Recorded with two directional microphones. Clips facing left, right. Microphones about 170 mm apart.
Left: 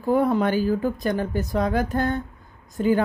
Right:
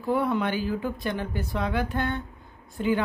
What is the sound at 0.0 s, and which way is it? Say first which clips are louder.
Speech: left 5 dB; 40° left (ahead or behind).